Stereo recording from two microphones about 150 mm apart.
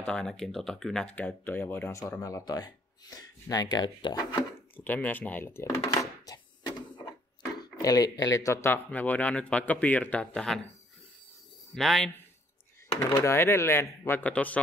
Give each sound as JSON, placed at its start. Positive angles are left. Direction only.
{"t": 0.0, "sound": "speech", "side_deg": 5}
{"t": 4.7, "sound": "speech", "side_deg": 10}
{"t": 5.9, "sound": "chopping", "side_deg": 25}
{"t": 7.8, "sound": "speech", "side_deg": 25}
{"t": 11.7, "sound": "speech", "side_deg": 0}
{"t": 13.2, "sound": "speech", "side_deg": 20}